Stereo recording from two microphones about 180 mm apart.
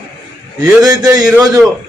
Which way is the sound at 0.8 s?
20° right (ahead or behind).